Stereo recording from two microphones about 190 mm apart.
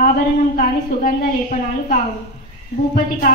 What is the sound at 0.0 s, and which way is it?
A woman's voice, 45° left (ahead or behind).